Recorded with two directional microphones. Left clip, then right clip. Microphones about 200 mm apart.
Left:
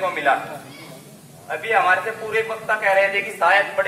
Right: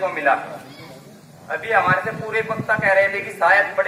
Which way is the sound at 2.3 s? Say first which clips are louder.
Even; 5° left (ahead or behind).